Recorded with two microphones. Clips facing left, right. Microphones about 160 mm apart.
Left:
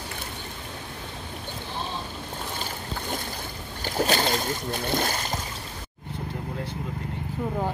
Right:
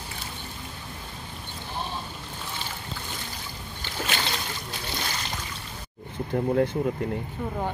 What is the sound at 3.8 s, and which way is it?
Boat, 40° left (ahead or behind).